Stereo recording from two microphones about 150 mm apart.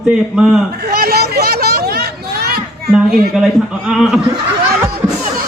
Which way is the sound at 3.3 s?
Centre (ahead or behind).